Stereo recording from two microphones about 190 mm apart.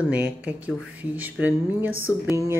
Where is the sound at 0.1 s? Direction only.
5° right (ahead or behind).